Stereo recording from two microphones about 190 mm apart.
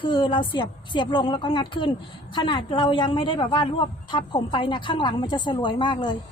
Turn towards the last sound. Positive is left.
turn(degrees=25)  # may be behind; listen again after turning